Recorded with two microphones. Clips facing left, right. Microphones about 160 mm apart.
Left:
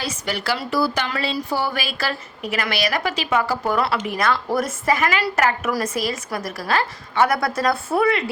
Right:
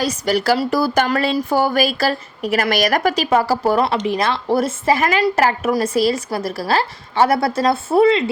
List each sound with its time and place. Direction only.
0.0 s a woman's voice: 40° right (ahead or behind)